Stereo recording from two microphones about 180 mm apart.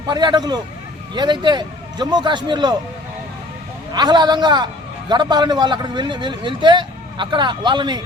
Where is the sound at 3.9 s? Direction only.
25° right (ahead or behind).